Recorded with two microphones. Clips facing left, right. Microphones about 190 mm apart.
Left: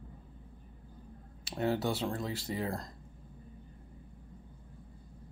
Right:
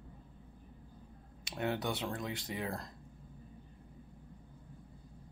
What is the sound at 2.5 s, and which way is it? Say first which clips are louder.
Speech: left 6 dB; 35° left (ahead or behind).